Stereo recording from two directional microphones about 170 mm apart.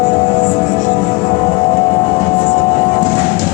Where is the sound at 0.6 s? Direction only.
45° left (ahead or behind).